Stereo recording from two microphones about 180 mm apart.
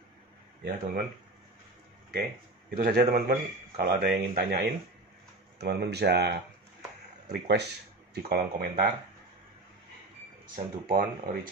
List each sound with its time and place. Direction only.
0.7 s speech: 55° right (ahead or behind)
2.7 s a man's voice: 60° right (ahead or behind)
10.4 s speech: 50° right (ahead or behind)